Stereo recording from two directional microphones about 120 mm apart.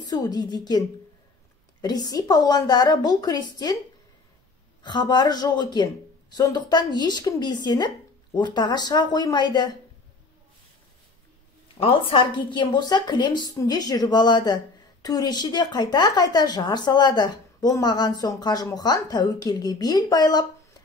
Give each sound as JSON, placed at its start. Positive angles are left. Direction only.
{"t": 0.0, "sound": "a woman's voice", "side_deg": 30}
{"t": 4.8, "sound": "a woman's voice", "side_deg": 35}
{"t": 11.8, "sound": "a woman's voice", "side_deg": 50}